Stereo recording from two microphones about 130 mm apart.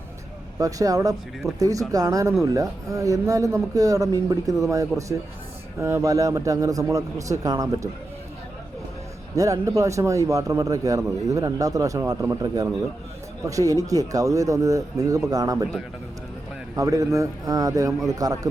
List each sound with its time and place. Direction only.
0.6 s a man's voice: 25° right (ahead or behind)
5.8 s a man's voice: 25° right (ahead or behind)
9.3 s a man's voice: 25° right (ahead or behind)
16.7 s a man's voice: 25° right (ahead or behind)